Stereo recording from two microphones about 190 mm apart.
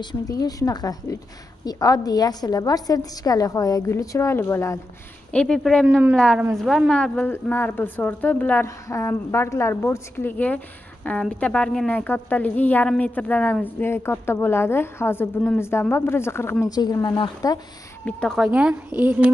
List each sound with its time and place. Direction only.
0.0 s a woman's voice: 20° left (ahead or behind); by 5.9 s 5° left (ahead or behind)
5.9 s a woman's voice: 10° right (ahead or behind)
6.1 s a woman's voice: 5° left (ahead or behind); by 17.6 s 20° left (ahead or behind)
18.0 s a woman's voice: 5° left (ahead or behind)